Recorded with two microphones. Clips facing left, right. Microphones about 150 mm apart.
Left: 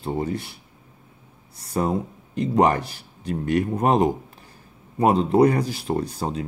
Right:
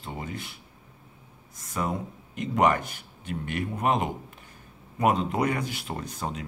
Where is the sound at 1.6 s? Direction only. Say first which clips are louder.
Left 7 dB; 35° left (ahead or behind).